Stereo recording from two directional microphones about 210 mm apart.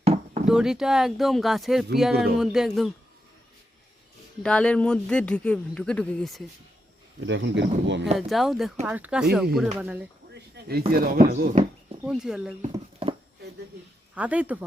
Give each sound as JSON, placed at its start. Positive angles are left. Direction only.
{"t": 0.0, "sound": "a sound", "side_deg": -30}
{"t": 0.4, "sound": "a man's voice", "side_deg": -5}
{"t": 4.4, "sound": "a man's voice", "side_deg": 5}
{"t": 7.2, "sound": "speech", "side_deg": -60}
{"t": 8.3, "sound": "a man's voice", "side_deg": 0}
{"t": 10.3, "sound": "a sound", "side_deg": -50}
{"t": 10.9, "sound": "speech", "side_deg": -45}
{"t": 12.0, "sound": "a man's voice", "side_deg": -5}
{"t": 12.7, "sound": "horse", "side_deg": -25}
{"t": 14.2, "sound": "speech", "side_deg": -5}